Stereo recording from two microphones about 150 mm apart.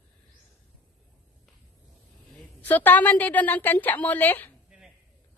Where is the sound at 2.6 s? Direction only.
10° left (ahead or behind).